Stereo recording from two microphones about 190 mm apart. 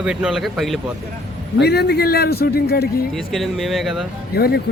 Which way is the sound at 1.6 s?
60° left (ahead or behind).